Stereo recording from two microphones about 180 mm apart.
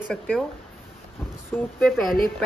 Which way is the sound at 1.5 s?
10° left (ahead or behind).